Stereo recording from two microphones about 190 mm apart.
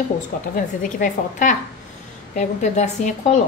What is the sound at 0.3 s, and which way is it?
A woman's voice, 45° left (ahead or behind).